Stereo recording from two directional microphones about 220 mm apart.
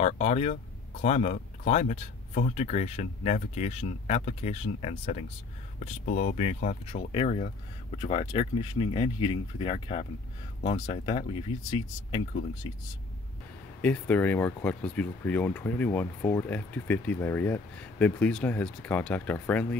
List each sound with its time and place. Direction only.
0.0 s speech: 30° left (ahead or behind)
13.7 s speech: 5° left (ahead or behind)